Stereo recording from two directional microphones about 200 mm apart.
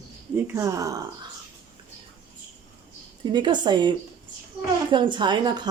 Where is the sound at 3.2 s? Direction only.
20° right (ahead or behind).